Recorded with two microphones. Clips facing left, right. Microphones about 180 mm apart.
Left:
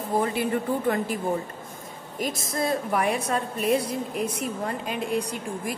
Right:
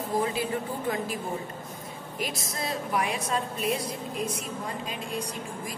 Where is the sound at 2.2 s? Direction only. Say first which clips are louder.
Left 6 dB; 50° left (ahead or behind).